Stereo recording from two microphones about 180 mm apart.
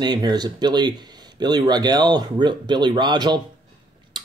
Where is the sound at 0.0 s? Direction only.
25° right (ahead or behind).